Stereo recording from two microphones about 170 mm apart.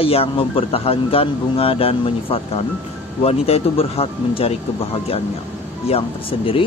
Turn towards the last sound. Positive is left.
turn(degrees=30)  # may be behind; listen again after turning